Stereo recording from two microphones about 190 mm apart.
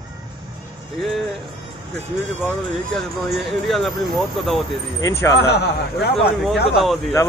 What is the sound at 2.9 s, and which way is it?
Speech, centre (ahead or behind).